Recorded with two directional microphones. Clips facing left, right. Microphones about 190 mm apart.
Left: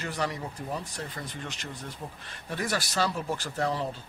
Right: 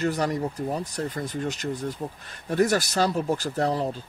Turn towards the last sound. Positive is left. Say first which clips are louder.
# right 5 dB
turn(degrees=-40)  # may be behind; listen again after turning